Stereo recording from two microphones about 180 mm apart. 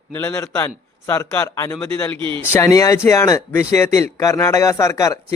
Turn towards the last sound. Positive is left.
turn(degrees=15)  # may be behind; listen again after turning